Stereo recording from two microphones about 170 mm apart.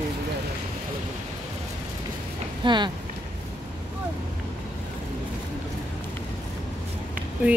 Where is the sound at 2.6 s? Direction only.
25° right (ahead or behind).